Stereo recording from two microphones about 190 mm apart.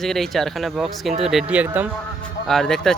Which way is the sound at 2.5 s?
Centre (ahead or behind).